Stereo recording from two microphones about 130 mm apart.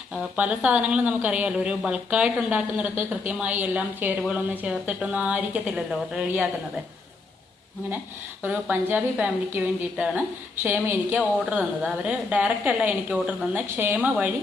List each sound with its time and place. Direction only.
0.1 s a woman's voice: 10° right (ahead or behind)
8.4 s a woman's voice: 15° right (ahead or behind)